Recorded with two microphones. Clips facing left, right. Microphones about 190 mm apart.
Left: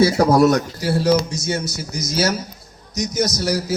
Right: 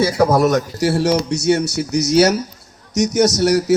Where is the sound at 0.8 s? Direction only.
80° right.